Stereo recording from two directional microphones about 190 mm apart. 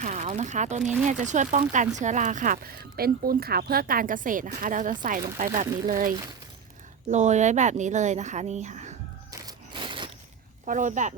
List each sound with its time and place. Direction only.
0.0 s speech: 40° right (ahead or behind)
9.3 s single-lens reflex camera: 20° right (ahead or behind)
10.7 s speech: 40° right (ahead or behind)